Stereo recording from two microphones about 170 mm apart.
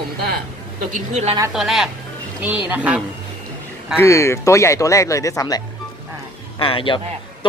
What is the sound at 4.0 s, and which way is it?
Speech, 15° left (ahead or behind).